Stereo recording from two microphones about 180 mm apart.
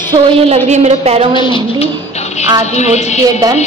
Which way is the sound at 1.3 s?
25° left (ahead or behind).